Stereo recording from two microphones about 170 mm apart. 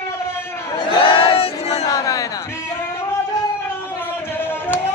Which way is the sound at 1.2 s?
35° left (ahead or behind).